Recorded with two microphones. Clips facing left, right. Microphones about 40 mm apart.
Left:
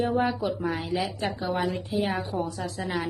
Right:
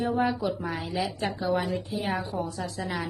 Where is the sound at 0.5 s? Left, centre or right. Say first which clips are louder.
Left 2 dB; left.